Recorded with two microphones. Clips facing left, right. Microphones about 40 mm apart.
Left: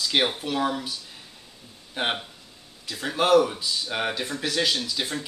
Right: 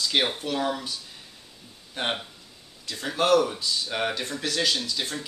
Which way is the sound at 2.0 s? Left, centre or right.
Centre.